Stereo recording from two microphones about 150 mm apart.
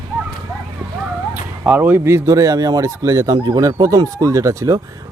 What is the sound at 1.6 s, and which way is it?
Speech, 10° right (ahead or behind).